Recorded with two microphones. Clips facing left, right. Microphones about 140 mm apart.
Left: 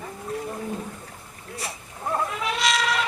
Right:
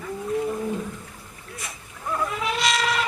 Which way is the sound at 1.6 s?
30° left (ahead or behind).